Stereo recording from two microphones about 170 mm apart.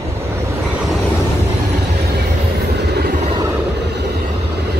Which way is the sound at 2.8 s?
75° right (ahead or behind).